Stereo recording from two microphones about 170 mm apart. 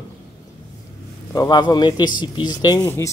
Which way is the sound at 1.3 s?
25° left (ahead or behind).